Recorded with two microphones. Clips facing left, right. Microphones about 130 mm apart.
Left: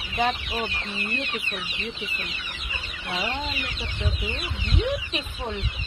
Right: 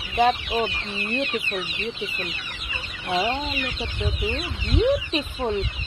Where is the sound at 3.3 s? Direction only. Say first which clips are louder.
Right 3 dB; 15° right (ahead or behind).